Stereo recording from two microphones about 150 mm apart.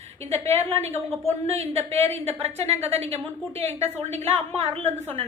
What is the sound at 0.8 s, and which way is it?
A woman's voice, 45° right (ahead or behind).